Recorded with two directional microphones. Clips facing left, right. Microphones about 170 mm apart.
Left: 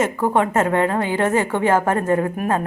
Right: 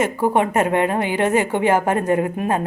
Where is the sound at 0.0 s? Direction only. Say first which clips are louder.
Even; 15° right (ahead or behind).